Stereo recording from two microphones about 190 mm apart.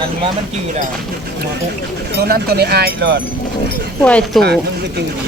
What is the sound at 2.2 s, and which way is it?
Speech, 55° right (ahead or behind).